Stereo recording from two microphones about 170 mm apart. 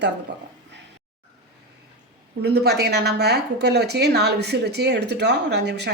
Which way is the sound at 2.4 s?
70° right (ahead or behind).